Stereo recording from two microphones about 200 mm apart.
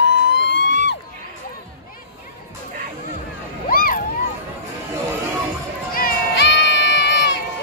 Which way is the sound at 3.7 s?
45° left (ahead or behind).